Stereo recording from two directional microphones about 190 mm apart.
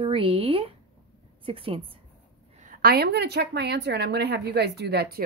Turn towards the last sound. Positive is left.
turn(degrees=-60)  # may be behind; listen again after turning